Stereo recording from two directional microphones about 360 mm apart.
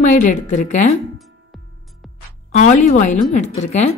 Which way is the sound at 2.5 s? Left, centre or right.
Centre.